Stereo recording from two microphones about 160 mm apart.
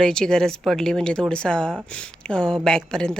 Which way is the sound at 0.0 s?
5° left (ahead or behind).